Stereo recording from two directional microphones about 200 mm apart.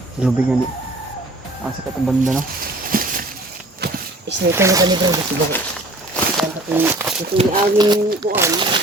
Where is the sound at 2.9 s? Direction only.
45° right (ahead or behind).